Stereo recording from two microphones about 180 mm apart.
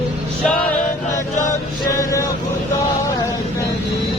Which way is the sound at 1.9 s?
20° left (ahead or behind).